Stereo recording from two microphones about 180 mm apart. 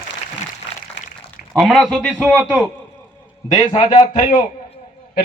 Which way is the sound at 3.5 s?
30° left (ahead or behind).